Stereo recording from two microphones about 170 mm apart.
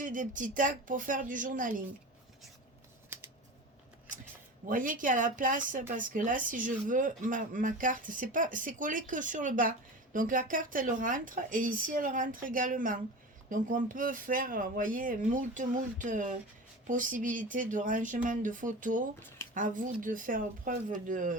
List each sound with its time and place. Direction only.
0.0 s speech: 50° right (ahead or behind)
4.7 s speech: 50° right (ahead or behind)